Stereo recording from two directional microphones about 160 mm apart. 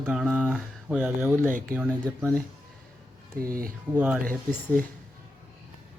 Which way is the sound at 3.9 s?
10° right (ahead or behind).